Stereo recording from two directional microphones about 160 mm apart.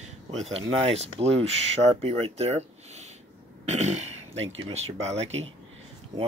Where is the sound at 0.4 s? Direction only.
40° right (ahead or behind).